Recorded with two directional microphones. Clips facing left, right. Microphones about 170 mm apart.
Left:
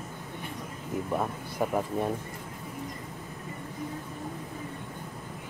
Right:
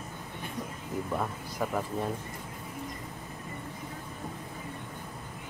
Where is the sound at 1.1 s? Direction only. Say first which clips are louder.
Left 2 dB; 15° left (ahead or behind).